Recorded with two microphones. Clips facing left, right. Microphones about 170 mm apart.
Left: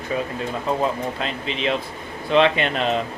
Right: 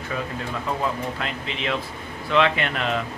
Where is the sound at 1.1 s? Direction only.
25° left (ahead or behind).